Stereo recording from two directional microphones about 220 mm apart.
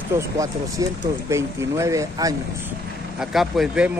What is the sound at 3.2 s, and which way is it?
Speech, centre (ahead or behind).